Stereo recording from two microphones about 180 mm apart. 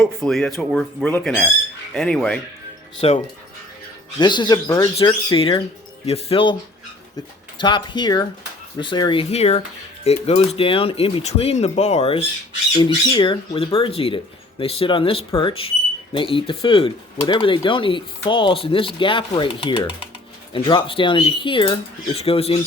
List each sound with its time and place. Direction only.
0.0 s speech: centre (ahead or behind)
3.0 s speech: 30° left (ahead or behind)
4.2 s speech: 25° left (ahead or behind)
7.6 s speech: 25° left (ahead or behind)